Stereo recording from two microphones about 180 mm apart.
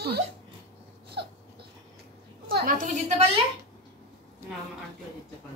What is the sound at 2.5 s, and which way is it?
Speech, 55° right (ahead or behind).